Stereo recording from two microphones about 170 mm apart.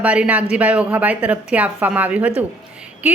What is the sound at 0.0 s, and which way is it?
A woman's voice, 10° right (ahead or behind).